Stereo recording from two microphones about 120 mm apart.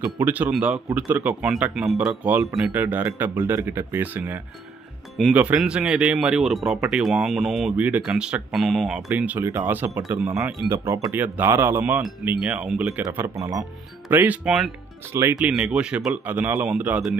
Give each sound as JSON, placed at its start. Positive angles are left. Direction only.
{"t": 0.2, "sound": "speech", "side_deg": -15}
{"t": 7.7, "sound": "speech", "side_deg": -15}
{"t": 9.1, "sound": "speech", "side_deg": -15}
{"t": 13.1, "sound": "speech", "side_deg": -25}
{"t": 14.1, "sound": "speech", "side_deg": -15}
{"t": 15.5, "sound": "speech", "side_deg": -10}
{"t": 16.3, "sound": "speech", "side_deg": -15}